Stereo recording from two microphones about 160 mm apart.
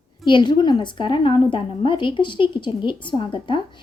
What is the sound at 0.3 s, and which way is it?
A woman's voice, 30° left (ahead or behind).